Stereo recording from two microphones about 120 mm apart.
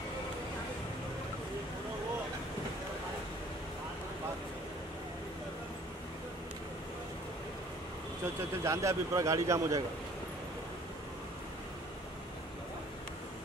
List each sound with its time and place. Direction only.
8.6 s a man's voice: 25° right (ahead or behind)